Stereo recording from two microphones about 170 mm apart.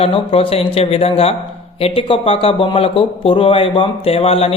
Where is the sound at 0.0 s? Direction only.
35° left (ahead or behind).